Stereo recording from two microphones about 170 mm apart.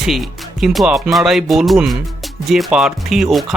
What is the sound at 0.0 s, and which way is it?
Speech, centre (ahead or behind).